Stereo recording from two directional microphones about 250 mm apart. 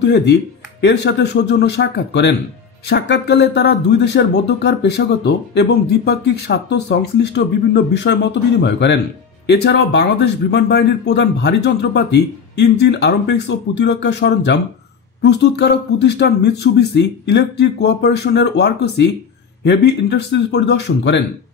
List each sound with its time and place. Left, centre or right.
0.0 s speech: left